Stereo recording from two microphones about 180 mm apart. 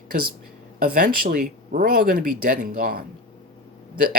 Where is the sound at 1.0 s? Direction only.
45° right (ahead or behind).